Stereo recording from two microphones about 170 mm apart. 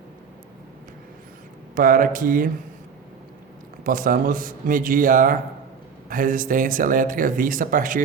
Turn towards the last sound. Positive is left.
turn(degrees=-50)  # may be behind; listen again after turning